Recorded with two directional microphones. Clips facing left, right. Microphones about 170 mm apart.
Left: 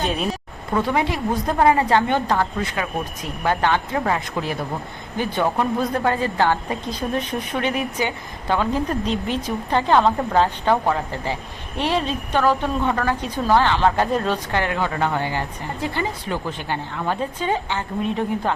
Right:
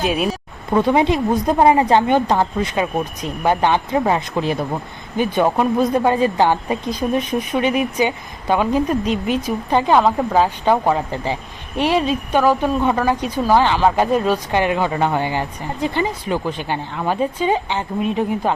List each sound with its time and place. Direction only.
0.0 s a woman's voice: 5° right (ahead or behind)
0.7 s a woman's voice: 20° right (ahead or behind)